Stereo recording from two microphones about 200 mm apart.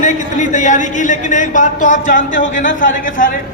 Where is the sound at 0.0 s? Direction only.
35° left (ahead or behind).